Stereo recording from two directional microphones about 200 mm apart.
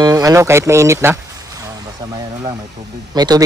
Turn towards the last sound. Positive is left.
turn(degrees=-20)  # may be behind; listen again after turning